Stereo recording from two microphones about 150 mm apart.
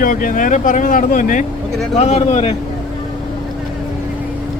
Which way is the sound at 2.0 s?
45° left (ahead or behind).